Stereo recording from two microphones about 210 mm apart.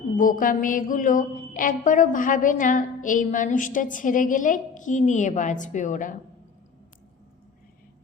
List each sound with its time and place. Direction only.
0.2 s a woman's voice: 40° left (ahead or behind)